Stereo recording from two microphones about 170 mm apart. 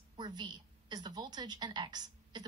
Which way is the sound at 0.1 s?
25° right (ahead or behind).